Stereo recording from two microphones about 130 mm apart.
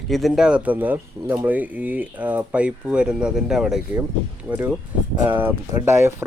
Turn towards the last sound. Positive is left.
turn(degrees=-20)  # may be behind; listen again after turning